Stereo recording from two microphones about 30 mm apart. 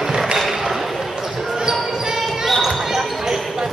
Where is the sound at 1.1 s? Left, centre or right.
Centre.